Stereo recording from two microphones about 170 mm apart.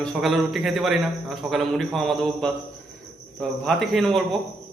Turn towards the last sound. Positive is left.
turn(degrees=0)  # may be behind; listen again after turning